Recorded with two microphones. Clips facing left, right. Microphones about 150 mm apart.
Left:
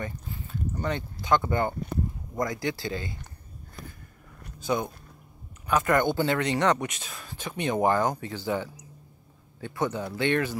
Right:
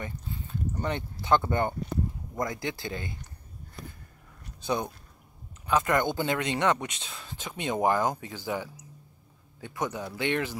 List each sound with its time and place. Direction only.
0.0 s a sound: 25° right (ahead or behind)
1.5 s speech: 20° right (ahead or behind)
4.7 s a man's voice: 25° right (ahead or behind)